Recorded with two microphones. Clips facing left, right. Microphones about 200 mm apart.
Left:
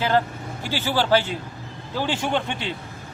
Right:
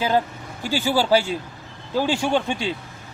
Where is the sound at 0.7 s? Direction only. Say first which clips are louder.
Right 2 dB; 15° right (ahead or behind).